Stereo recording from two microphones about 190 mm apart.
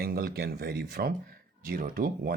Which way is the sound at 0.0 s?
55° right (ahead or behind).